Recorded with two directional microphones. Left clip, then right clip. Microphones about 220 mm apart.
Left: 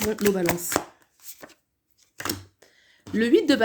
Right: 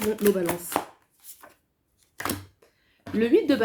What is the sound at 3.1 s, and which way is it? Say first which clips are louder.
Speech: left 1 dB; 50° left (ahead or behind).